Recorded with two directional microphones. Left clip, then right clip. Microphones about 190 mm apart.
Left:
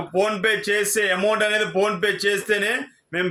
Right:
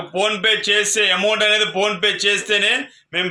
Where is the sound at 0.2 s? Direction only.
55° left (ahead or behind).